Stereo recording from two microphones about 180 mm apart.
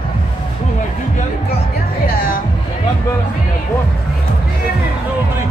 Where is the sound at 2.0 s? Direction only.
55° left (ahead or behind).